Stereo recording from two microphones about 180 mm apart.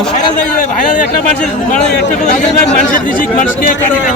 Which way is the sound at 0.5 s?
45° left (ahead or behind).